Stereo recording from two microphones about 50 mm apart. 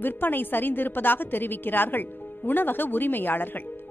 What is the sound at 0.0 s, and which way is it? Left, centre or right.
A woman's voice, left.